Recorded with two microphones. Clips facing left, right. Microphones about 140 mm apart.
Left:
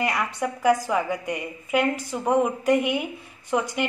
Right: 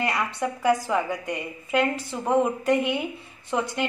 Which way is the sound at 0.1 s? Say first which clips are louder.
Even; centre (ahead or behind).